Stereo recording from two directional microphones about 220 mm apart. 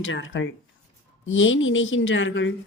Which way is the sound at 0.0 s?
60° left (ahead or behind).